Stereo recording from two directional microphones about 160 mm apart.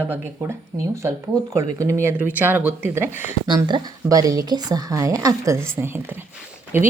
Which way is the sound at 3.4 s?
25° right (ahead or behind).